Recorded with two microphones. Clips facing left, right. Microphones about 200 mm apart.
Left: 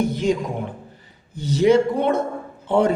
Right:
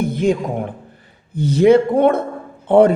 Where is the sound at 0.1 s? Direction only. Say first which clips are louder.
Right 4 dB; 55° right (ahead or behind).